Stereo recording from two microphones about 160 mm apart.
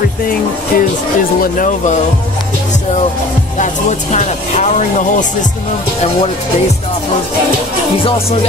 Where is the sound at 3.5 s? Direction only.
50° left (ahead or behind).